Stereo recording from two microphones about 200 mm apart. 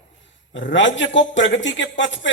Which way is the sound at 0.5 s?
65° left (ahead or behind).